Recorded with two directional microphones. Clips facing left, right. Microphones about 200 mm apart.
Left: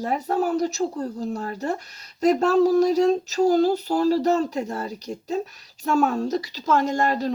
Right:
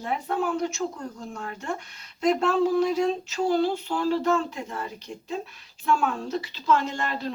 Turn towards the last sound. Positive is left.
turn(degrees=40)  # may be behind; listen again after turning